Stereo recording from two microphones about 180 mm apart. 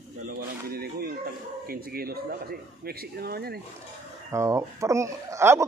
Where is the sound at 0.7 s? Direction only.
60° right (ahead or behind).